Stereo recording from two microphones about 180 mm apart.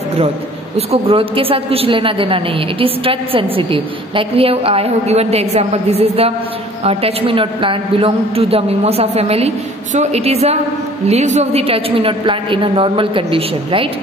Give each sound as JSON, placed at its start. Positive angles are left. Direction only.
{"t": 0.7, "sound": "a woman's voice", "side_deg": -30}